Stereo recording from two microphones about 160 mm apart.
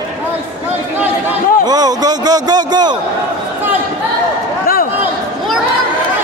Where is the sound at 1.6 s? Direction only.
25° right (ahead or behind).